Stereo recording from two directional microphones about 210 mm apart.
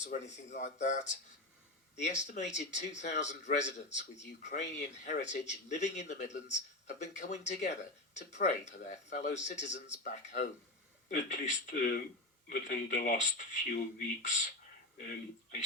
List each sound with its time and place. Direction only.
0.0 s speech: 35° left (ahead or behind)